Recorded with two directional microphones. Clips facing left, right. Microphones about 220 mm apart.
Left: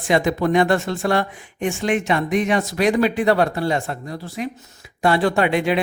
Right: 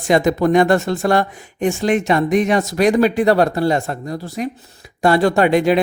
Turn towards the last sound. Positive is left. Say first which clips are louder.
# right 5 dB
turn(degrees=-40)  # may be behind; listen again after turning